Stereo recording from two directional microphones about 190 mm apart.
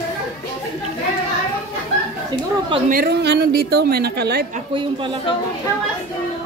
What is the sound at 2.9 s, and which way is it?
A woman's voice, 55° right (ahead or behind).